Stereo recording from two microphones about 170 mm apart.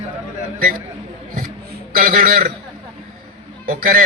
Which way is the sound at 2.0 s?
55° right (ahead or behind).